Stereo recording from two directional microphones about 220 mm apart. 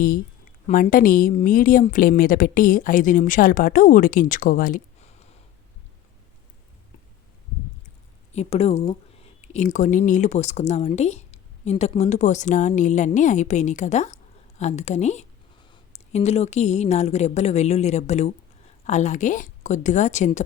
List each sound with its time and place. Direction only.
0.7 s speech: 40° left (ahead or behind)
8.3 s speech: 30° left (ahead or behind)